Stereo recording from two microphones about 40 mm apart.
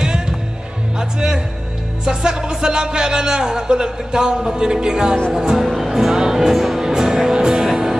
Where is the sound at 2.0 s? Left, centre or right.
Centre.